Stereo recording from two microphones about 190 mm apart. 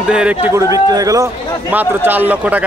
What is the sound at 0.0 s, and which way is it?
A man's voice, 5° right (ahead or behind).